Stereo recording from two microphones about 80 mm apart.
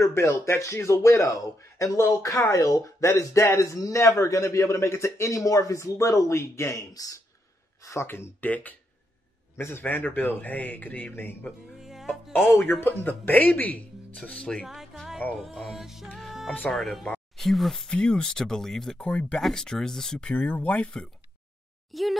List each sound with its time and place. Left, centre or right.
0.0 s speech: left
6.9 s speech: left
7.8 s speech: left
11.8 s music: centre
12.8 s speech: left; by 14.7 s centre
14.7 s a sound: centre
15.4 s music: centre
17.9 s speech: centre
21.9 s music: centre